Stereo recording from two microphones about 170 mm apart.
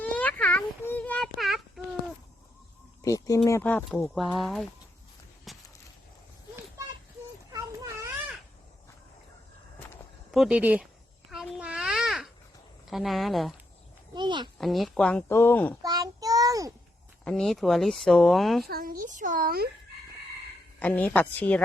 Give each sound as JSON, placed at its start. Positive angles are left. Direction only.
{"t": 0.0, "sound": "a sound", "side_deg": 10}
{"t": 1.4, "sound": "child singing", "side_deg": 0}
{"t": 3.0, "sound": "speech", "side_deg": 20}
{"t": 5.5, "sound": "a sound", "side_deg": 0}
{"t": 7.5, "sound": "children playing", "side_deg": -20}
{"t": 10.3, "sound": "speech", "side_deg": -5}
{"t": 11.3, "sound": "babbling", "side_deg": -5}
{"t": 12.9, "sound": "speech", "side_deg": 0}
{"t": 14.1, "sound": "a sound", "side_deg": -25}
{"t": 14.6, "sound": "speech", "side_deg": 0}
{"t": 15.8, "sound": "child singing", "side_deg": -20}
{"t": 17.2, "sound": "speech", "side_deg": 0}
{"t": 18.7, "sound": "a woman's voice", "side_deg": -55}
{"t": 20.7, "sound": "speech", "side_deg": 10}